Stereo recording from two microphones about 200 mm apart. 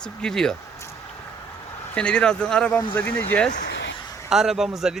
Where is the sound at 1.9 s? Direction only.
5° left (ahead or behind).